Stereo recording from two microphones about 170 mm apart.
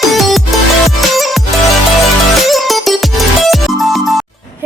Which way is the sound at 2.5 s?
Centre (ahead or behind).